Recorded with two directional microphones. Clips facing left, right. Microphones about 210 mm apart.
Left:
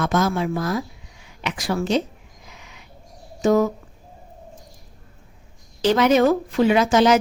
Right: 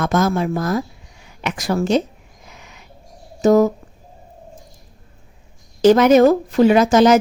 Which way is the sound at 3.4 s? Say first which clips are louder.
Right 5 dB; 40° right (ahead or behind).